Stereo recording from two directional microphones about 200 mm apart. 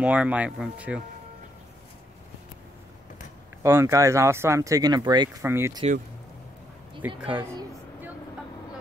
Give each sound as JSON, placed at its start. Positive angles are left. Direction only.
{"t": 0.0, "sound": "speech", "side_deg": -5}
{"t": 3.6, "sound": "speech", "side_deg": -15}
{"t": 7.2, "sound": "speech", "side_deg": -5}